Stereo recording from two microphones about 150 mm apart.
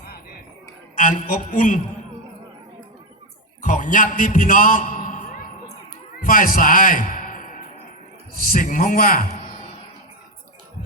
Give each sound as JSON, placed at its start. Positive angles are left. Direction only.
{"t": 0.9, "sound": "a man's voice", "side_deg": 55}
{"t": 3.6, "sound": "a man's voice", "side_deg": 60}